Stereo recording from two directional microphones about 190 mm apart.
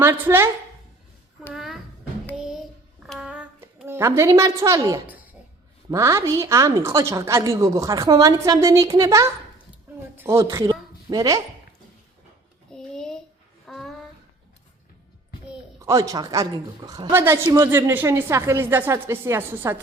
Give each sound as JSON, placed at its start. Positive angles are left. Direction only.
{"t": 0.0, "sound": "a woman's voice", "side_deg": -10}
{"t": 1.5, "sound": "music", "side_deg": 0}
{"t": 2.3, "sound": "child singing", "side_deg": 0}
{"t": 3.1, "sound": "a sound", "side_deg": -5}
{"t": 5.9, "sound": "a woman's voice", "side_deg": -15}
{"t": 12.7, "sound": "a sound", "side_deg": 5}
{"t": 15.8, "sound": "a woman's voice", "side_deg": -15}